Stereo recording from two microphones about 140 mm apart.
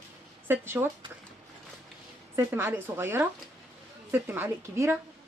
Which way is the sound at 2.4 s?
15° right (ahead or behind).